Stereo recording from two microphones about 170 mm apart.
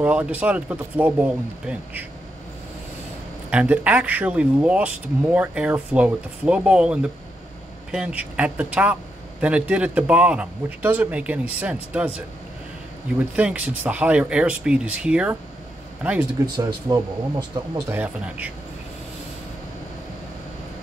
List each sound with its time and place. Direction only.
0.0 s speech: 10° right (ahead or behind)
3.4 s speech: 10° right (ahead or behind)
13.4 s speech: 10° right (ahead or behind)
16.5 s speech: 25° right (ahead or behind)
17.9 s speech: 10° right (ahead or behind)